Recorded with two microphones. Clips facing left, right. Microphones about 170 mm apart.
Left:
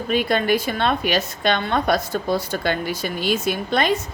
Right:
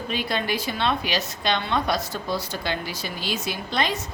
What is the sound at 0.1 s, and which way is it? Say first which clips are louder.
A woman's voice: left 8 dB; 55° left (ahead or behind).